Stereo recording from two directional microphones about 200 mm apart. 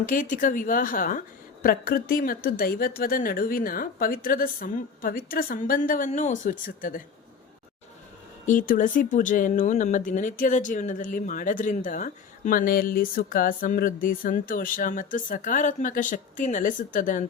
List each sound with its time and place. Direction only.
0.0 s speech: 40° left (ahead or behind)
8.4 s speech: 40° left (ahead or behind)